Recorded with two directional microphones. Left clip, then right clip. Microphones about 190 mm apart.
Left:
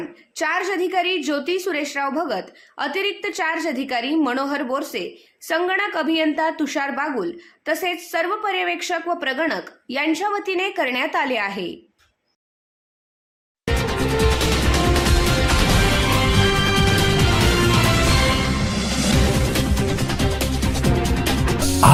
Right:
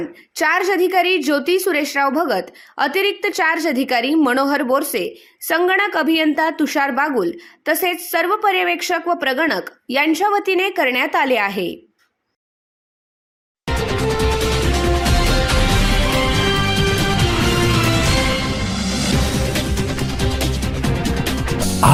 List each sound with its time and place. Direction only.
0.3 s a woman's voice: 30° right (ahead or behind)
13.7 s music: centre (ahead or behind)